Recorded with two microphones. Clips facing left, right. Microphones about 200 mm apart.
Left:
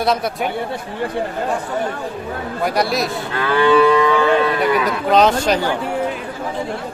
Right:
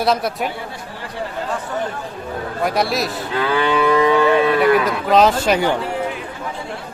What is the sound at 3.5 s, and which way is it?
Moo, 20° right (ahead or behind).